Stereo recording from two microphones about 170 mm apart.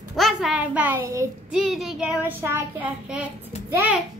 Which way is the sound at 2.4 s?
15° right (ahead or behind).